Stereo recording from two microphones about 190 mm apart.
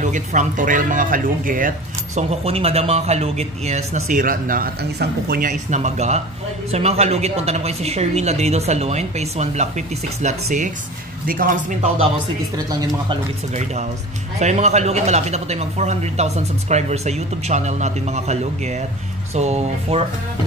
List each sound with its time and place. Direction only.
0.0 s speech: 40° right (ahead or behind)
2.1 s speech: 30° right (ahead or behind); by 11.9 s 50° right (ahead or behind)
12.5 s speech: 20° right (ahead or behind)
13.5 s speech: 35° right (ahead or behind)